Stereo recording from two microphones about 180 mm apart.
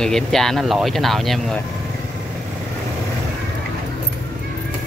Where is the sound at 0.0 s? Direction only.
Centre (ahead or behind).